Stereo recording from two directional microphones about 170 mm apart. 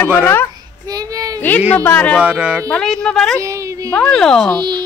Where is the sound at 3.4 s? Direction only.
20° right (ahead or behind).